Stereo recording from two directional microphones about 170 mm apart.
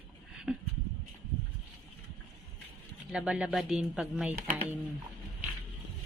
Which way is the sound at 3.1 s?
5° right (ahead or behind).